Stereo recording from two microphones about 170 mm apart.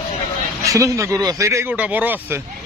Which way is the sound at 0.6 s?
20° right (ahead or behind).